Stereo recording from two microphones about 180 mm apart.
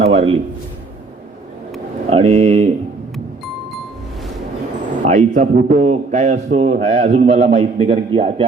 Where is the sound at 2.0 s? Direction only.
35° right (ahead or behind).